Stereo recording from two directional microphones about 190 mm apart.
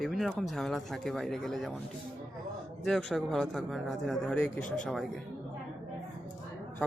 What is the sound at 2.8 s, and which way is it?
Speech, centre (ahead or behind).